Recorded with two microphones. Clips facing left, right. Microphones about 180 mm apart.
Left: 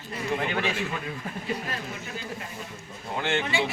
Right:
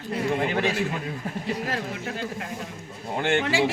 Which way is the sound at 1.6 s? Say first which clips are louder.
Right 5 dB; 85° right.